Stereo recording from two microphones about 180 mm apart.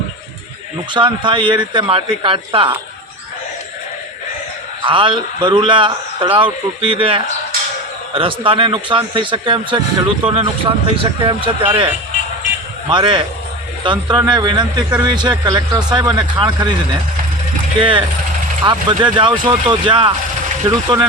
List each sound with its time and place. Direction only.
0.9 s speech: 25° right (ahead or behind)
4.9 s speech: 25° right (ahead or behind)
12.9 s speech: 25° right (ahead or behind)
17.7 s speech: 30° right (ahead or behind)